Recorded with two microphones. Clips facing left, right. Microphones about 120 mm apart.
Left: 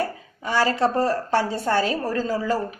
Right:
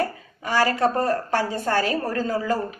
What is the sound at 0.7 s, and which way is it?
Speech, 25° left (ahead or behind).